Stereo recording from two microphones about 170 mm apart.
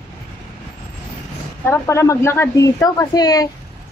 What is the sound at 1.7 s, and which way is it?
Speech, 15° left (ahead or behind).